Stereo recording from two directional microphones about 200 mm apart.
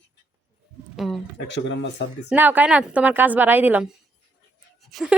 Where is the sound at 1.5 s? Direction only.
60° left (ahead or behind).